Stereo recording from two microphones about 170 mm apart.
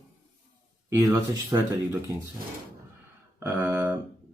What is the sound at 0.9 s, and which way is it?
Speech, 20° right (ahead or behind).